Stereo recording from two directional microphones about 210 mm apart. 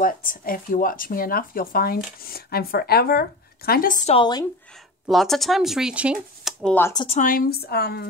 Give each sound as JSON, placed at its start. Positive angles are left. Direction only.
{"t": 0.0, "sound": "speech", "side_deg": 40}
{"t": 5.0, "sound": "speech", "side_deg": 0}
{"t": 6.9, "sound": "a woman's voice", "side_deg": 20}
{"t": 7.2, "sound": "speech", "side_deg": 45}